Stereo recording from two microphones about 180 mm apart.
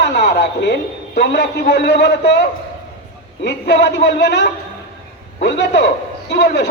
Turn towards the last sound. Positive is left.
turn(degrees=75)  # may be behind; listen again after turning